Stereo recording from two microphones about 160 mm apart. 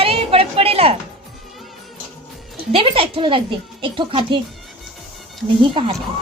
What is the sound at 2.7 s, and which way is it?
A woman's voice, 35° right (ahead or behind).